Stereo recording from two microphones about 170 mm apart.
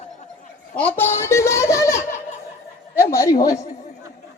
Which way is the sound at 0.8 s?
10° left (ahead or behind).